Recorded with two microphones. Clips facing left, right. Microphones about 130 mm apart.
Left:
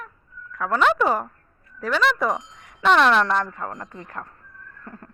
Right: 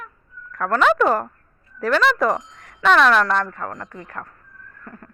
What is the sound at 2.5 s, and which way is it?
A woman's voice, 15° left (ahead or behind).